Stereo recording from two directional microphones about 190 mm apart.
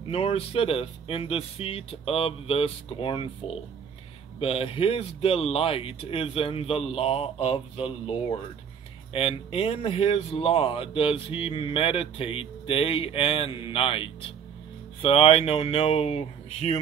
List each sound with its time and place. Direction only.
0.1 s speech: 30° left (ahead or behind)